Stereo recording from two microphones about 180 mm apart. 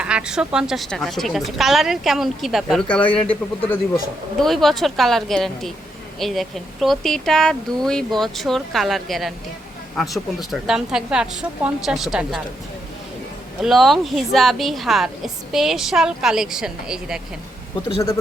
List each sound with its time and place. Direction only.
0.0 s a woman's voice: 5° right (ahead or behind)
4.4 s a woman's voice: centre (ahead or behind)
13.6 s a woman's voice: centre (ahead or behind)
17.8 s speech: 25° left (ahead or behind)